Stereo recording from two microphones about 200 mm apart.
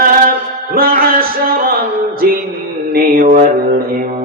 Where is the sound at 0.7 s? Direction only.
45° right (ahead or behind).